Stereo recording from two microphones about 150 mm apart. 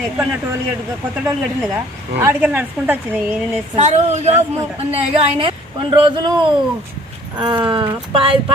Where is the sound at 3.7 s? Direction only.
50° right (ahead or behind).